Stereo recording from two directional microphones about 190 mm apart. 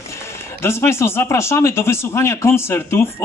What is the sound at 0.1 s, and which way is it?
Speech, 15° left (ahead or behind).